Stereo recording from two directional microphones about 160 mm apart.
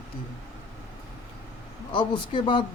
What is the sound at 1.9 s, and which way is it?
Speech, 30° left (ahead or behind).